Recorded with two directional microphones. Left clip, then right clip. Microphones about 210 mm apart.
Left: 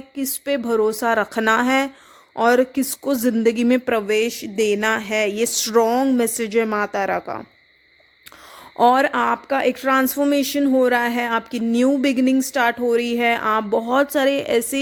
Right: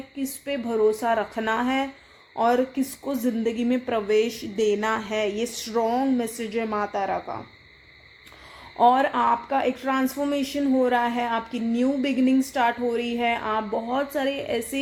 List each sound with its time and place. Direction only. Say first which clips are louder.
0.2 s speech: left 7 dB; 50° left (ahead or behind)
8.8 s speech: left 3 dB; 55° left (ahead or behind)